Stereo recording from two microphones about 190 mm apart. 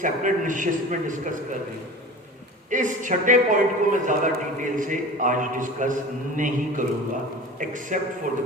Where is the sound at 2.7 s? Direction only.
40° right (ahead or behind).